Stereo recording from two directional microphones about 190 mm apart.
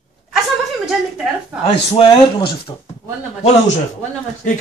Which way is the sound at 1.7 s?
30° left (ahead or behind).